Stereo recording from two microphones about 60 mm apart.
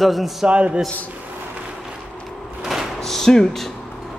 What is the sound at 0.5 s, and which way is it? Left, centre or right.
Speech, right.